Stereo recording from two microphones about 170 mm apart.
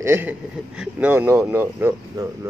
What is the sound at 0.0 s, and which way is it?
Speech, 15° right (ahead or behind).